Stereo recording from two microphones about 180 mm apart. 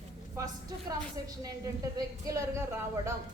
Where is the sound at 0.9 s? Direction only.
20° right (ahead or behind).